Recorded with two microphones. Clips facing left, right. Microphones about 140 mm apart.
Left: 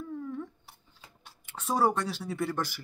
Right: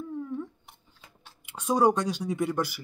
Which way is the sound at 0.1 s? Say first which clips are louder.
Right 3 dB; 20° right (ahead or behind).